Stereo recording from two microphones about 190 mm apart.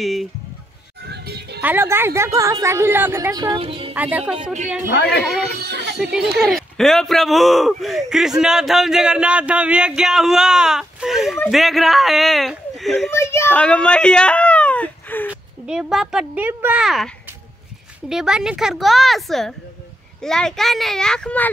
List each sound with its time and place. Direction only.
0.0 s speech: centre (ahead or behind)
1.0 s music: 60° right (ahead or behind)
1.6 s a woman's voice: 10° right (ahead or behind); by 3.9 s 30° right (ahead or behind)
3.9 s speech: 10° right (ahead or behind)
4.9 s speech: 60° left (ahead or behind)
5.6 s music: 60° right (ahead or behind)
6.4 s speech: centre (ahead or behind)
13.1 s a sound: 15° left (ahead or behind)
15.6 s speech: 5° right (ahead or behind)